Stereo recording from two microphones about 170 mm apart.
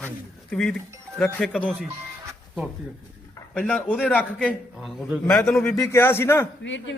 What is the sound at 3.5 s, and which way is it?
A man's voice, 10° left (ahead or behind).